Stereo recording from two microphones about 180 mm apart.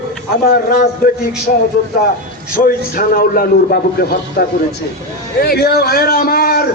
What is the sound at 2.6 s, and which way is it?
A man's voice, 55° left (ahead or behind).